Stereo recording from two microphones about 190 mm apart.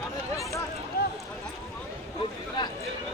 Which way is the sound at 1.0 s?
50° left (ahead or behind).